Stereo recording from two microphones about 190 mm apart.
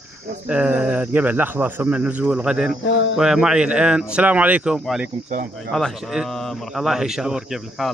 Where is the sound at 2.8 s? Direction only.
70° left (ahead or behind).